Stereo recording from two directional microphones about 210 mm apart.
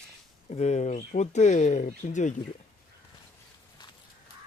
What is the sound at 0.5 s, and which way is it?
Speech, 35° left (ahead or behind).